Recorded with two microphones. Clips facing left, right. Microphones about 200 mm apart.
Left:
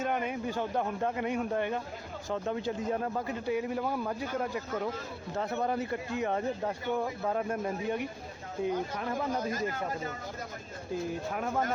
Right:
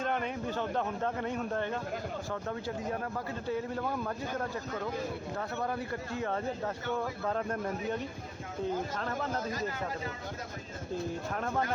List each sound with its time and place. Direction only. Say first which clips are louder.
0.0 s speech: left 1 dB; 10° left (ahead or behind)
5.4 s speech: left 6 dB; 20° left (ahead or behind)
11.3 s speech: left 1 dB; 5° left (ahead or behind)